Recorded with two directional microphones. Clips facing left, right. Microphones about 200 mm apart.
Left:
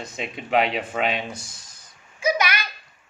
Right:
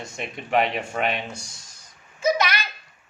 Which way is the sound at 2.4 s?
10° left (ahead or behind).